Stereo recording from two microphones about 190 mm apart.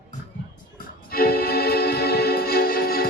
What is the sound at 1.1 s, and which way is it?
Music, 55° left (ahead or behind).